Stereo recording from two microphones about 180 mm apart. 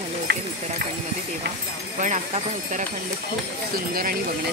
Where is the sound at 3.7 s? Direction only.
55° right (ahead or behind).